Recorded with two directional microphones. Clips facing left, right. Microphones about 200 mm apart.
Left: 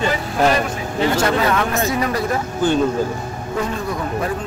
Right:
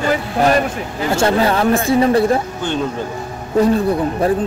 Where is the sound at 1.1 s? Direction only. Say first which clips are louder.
Right 6 dB; 30° right (ahead or behind).